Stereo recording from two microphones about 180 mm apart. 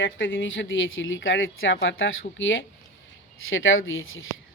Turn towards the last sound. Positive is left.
turn(degrees=90)